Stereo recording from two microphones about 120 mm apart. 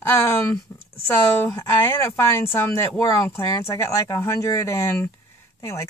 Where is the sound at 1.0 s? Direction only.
20° left (ahead or behind).